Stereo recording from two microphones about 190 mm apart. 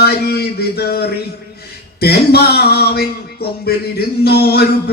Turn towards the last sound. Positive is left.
turn(degrees=55)  # may be behind; listen again after turning